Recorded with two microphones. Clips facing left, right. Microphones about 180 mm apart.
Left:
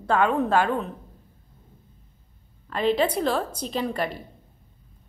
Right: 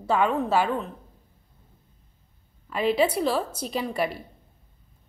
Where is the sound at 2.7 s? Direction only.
5° right (ahead or behind).